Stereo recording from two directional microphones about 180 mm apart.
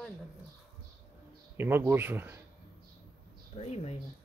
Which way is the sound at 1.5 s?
10° right (ahead or behind).